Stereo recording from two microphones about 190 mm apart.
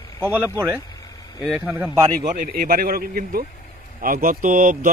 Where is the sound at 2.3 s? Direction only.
50° right (ahead or behind).